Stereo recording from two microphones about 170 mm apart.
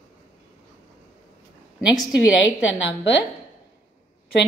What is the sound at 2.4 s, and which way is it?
Speech, 90° left.